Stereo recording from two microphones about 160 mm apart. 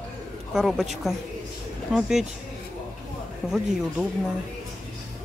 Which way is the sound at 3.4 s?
5° right (ahead or behind).